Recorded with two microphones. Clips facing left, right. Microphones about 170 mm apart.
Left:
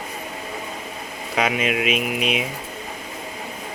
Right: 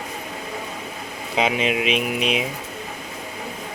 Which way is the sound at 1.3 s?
25° right (ahead or behind).